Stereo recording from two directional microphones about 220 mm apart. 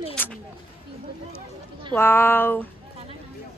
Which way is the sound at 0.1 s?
5° left (ahead or behind).